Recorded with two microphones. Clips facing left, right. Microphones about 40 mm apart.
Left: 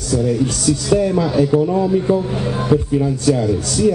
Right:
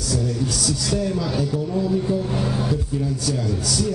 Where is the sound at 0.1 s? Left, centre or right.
Left.